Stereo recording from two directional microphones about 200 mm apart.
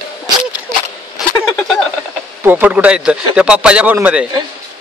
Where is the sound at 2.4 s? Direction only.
10° right (ahead or behind).